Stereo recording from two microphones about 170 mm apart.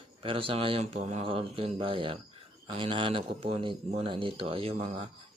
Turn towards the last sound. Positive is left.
turn(degrees=-35)  # may be behind; listen again after turning